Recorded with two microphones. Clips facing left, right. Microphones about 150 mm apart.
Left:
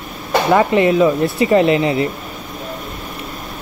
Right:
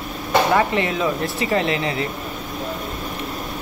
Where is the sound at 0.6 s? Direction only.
20° left (ahead or behind).